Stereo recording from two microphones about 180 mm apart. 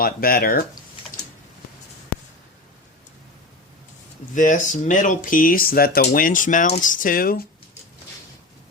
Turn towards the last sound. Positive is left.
turn(degrees=55)  # may be behind; listen again after turning